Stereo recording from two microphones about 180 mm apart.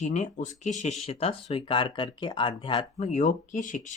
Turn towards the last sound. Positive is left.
turn(degrees=45)  # may be behind; listen again after turning